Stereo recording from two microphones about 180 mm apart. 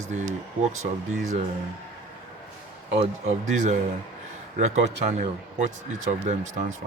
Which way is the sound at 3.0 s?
40° right (ahead or behind).